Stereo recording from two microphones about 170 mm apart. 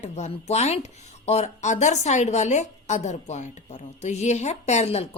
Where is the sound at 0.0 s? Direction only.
40° left (ahead or behind).